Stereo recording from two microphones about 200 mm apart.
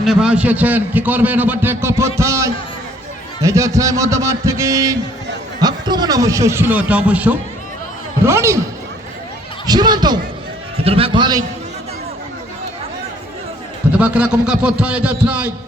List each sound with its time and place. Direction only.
0.0 s a man's voice: 5° right (ahead or behind)
9.6 s a man's voice: 20° right (ahead or behind)
13.9 s a man's voice: 5° right (ahead or behind)